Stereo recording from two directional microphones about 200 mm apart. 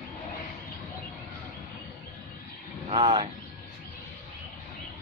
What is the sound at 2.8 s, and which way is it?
Speech, 25° right (ahead or behind).